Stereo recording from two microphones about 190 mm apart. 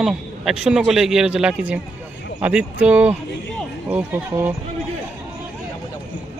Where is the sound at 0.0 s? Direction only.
5° right (ahead or behind).